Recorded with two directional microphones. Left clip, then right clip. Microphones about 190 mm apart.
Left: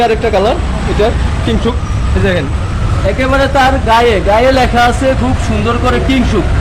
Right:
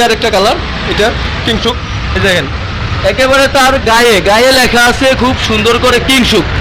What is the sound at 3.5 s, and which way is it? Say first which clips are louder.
A man's voice: right 2 dB; 15° right (ahead or behind).